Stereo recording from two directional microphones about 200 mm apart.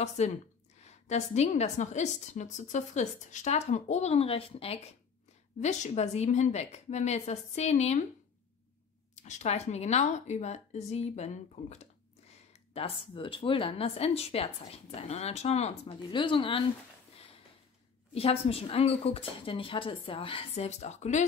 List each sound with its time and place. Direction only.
0.2 s a woman's voice: 35° left (ahead or behind)
9.1 s a woman's voice: 35° left (ahead or behind)
18.1 s speech: 30° left (ahead or behind)